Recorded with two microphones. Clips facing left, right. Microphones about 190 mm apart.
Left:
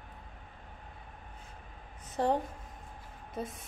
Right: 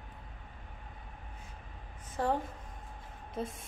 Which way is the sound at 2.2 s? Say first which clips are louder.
Left 2 dB; 25° left (ahead or behind).